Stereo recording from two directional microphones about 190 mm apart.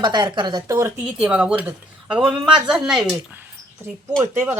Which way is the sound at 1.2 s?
5° right (ahead or behind).